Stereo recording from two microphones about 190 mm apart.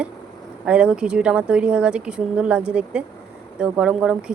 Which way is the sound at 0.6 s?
5° right (ahead or behind).